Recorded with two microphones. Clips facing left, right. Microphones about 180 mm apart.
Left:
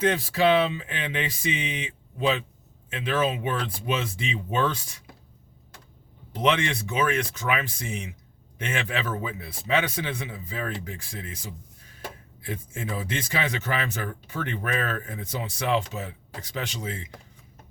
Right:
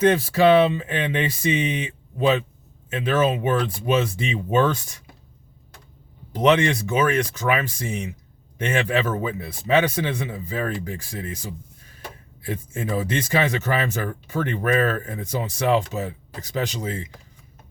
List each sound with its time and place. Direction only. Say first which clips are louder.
0.0 s speech: right 5 dB; 45° right (ahead or behind)
6.3 s speech: right 6 dB; 40° right (ahead or behind)
12.4 s speech: right 5 dB; 45° right (ahead or behind)